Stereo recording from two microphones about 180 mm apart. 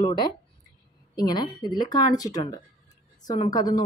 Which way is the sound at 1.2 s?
25° left (ahead or behind).